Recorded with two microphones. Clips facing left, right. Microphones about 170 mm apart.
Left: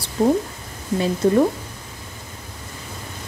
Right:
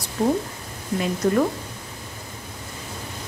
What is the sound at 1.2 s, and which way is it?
Speech, 25° left (ahead or behind).